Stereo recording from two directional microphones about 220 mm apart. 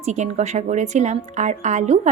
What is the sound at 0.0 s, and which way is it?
Speech, 30° right (ahead or behind).